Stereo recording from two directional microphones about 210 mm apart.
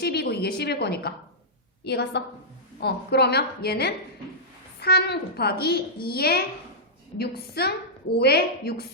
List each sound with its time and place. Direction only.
0.0 s a woman's voice: 50° left (ahead or behind)